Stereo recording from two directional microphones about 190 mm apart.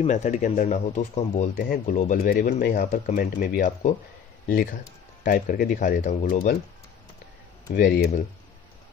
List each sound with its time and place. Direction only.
0.0 s speech: 40° left (ahead or behind)
5.2 s speech: 45° left (ahead or behind)
7.7 s speech: 45° left (ahead or behind)